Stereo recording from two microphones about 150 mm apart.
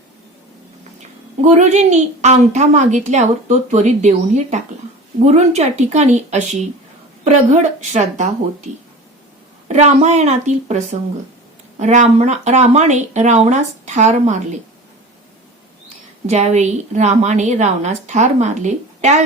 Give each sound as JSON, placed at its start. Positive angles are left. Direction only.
{"t": 1.5, "sound": "a woman's voice", "side_deg": -50}
{"t": 9.6, "sound": "a woman's voice", "side_deg": -50}
{"t": 16.2, "sound": "a woman's voice", "side_deg": -50}